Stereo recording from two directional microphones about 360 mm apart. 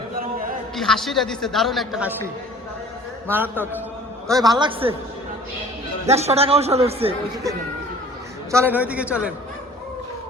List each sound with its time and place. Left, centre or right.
0.2 s a sound: right
0.8 s a man's voice: centre
3.2 s a man's voice: centre
6.1 s a man's voice: centre
8.5 s a man's voice: centre